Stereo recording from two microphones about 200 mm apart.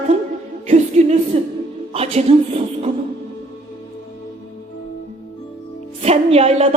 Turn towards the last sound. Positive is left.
turn(degrees=-30)  # may be behind; listen again after turning